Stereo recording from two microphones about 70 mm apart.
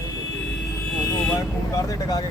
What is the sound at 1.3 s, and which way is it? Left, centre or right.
Speech, left.